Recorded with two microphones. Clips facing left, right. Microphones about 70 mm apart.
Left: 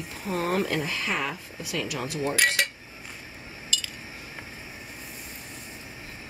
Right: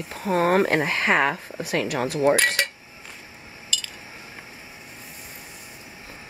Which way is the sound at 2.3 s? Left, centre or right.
Centre.